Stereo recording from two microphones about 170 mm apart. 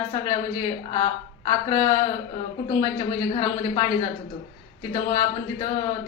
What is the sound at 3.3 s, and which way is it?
Speech, 30° left (ahead or behind).